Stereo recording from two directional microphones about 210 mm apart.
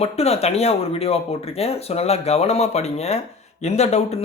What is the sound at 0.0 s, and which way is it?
Speech, 30° left (ahead or behind).